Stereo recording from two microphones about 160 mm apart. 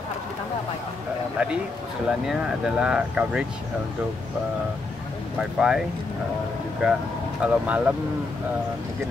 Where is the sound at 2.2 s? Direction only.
5° right (ahead or behind).